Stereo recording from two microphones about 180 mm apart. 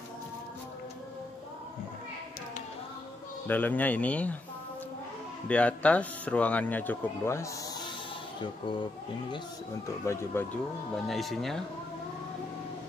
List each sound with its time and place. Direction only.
3.4 s speech: 10° left (ahead or behind)
5.5 s speech: 5° left (ahead or behind)
9.8 s speech: 15° left (ahead or behind)
11.1 s speech: centre (ahead or behind)